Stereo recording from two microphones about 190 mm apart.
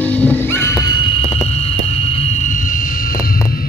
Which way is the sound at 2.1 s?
35° left (ahead or behind).